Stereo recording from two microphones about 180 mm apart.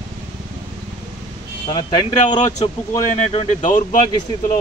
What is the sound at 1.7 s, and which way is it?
Speech, 25° left (ahead or behind).